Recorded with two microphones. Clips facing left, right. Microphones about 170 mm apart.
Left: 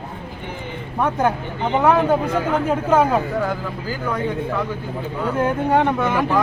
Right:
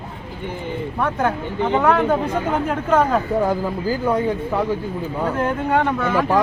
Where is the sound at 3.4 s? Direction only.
35° right (ahead or behind).